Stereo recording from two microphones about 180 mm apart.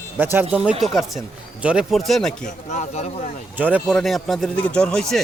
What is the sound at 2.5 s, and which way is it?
Speech, 40° left (ahead or behind).